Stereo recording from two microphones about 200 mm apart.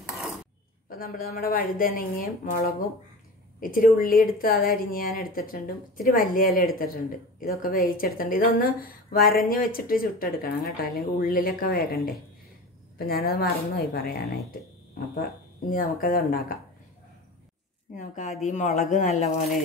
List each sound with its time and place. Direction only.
0.8 s a woman's voice: 45° left (ahead or behind)
3.6 s a woman's voice: 45° left (ahead or behind)
15.1 s a woman's voice: 45° left (ahead or behind)
17.9 s speech: 35° left (ahead or behind)